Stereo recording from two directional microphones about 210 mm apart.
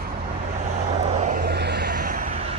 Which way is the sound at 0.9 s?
35° right (ahead or behind).